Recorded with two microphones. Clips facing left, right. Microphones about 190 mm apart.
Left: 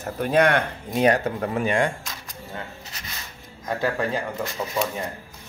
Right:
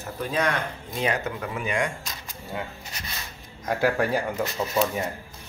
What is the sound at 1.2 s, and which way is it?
Speech, 40° left (ahead or behind).